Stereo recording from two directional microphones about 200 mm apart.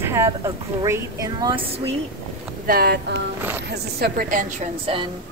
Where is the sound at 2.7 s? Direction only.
50° right (ahead or behind); by 5.1 s 25° right (ahead or behind).